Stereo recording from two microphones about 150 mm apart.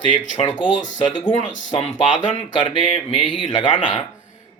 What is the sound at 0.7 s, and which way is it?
Speech, 55° left (ahead or behind).